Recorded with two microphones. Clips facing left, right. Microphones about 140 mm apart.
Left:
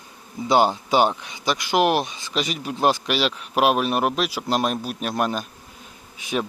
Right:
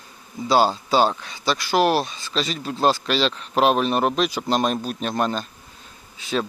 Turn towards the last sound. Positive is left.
turn(degrees=15)  # may be behind; listen again after turning